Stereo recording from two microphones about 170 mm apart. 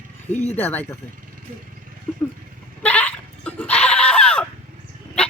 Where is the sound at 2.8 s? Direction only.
10° left (ahead or behind).